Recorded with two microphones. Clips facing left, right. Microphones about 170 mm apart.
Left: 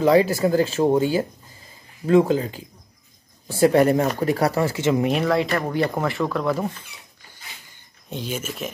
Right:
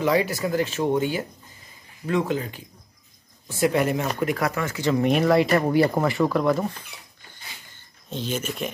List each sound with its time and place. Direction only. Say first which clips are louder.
0.0 s speech: left 5 dB; 30° left (ahead or behind)
5.0 s speech: right 2 dB; centre (ahead or behind)
8.1 s speech: right 1 dB; 10° left (ahead or behind)